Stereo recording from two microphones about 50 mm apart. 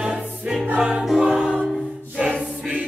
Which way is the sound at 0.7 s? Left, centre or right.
Centre.